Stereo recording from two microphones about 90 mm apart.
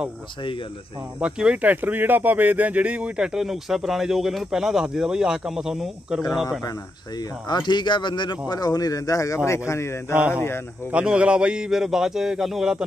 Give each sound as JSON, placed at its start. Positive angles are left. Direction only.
{"t": 1.2, "sound": "speech", "side_deg": -15}
{"t": 7.2, "sound": "speech", "side_deg": 55}
{"t": 10.1, "sound": "speech", "side_deg": -15}